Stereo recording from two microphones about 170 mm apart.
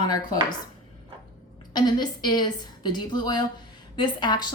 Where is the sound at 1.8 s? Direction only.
25° left (ahead or behind).